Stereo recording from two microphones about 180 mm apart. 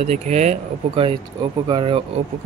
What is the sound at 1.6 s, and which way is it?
Speech, 30° right (ahead or behind).